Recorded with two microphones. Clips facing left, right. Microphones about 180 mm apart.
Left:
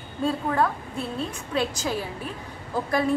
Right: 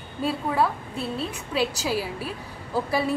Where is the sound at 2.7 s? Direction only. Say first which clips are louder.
Even; 5° right (ahead or behind).